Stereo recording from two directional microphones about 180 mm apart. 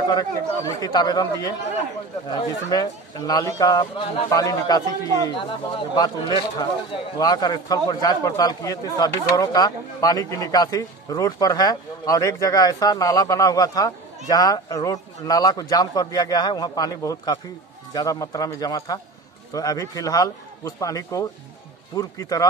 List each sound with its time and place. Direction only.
0.7 s speech: 20° left (ahead or behind)